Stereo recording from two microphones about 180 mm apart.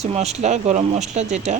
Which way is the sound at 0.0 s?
35° right (ahead or behind).